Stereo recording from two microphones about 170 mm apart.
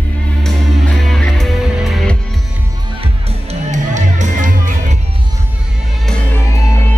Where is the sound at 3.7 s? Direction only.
45° right (ahead or behind).